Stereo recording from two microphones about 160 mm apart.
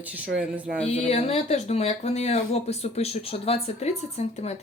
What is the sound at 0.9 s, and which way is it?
Speech, 40° left (ahead or behind).